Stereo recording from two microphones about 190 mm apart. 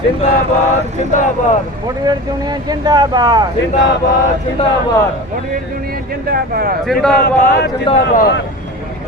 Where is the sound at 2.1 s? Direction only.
20° right (ahead or behind).